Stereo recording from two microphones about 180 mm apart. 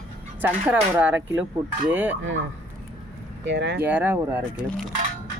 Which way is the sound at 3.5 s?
75° right (ahead or behind).